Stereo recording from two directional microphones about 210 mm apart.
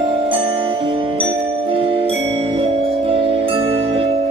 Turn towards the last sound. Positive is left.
turn(degrees=-25)  # may be behind; listen again after turning